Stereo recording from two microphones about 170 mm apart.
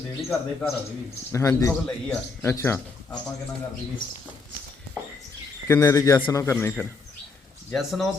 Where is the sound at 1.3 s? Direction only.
20° left (ahead or behind).